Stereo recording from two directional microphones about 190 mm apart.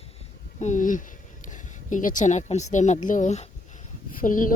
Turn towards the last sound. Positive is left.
turn(degrees=45)  # may be behind; listen again after turning